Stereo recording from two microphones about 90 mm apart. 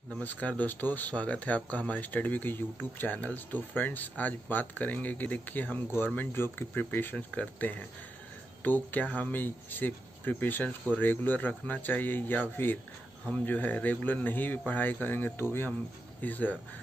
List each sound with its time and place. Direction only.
0.2 s speech: 20° left (ahead or behind)